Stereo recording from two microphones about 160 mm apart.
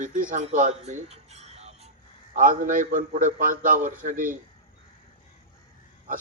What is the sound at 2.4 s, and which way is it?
A man's voice, 60° right (ahead or behind).